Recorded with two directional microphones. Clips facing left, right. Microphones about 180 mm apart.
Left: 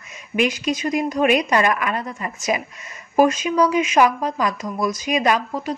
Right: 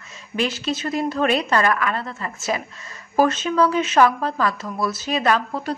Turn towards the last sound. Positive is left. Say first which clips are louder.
# left 1 dB
turn(degrees=10)  # may be behind; listen again after turning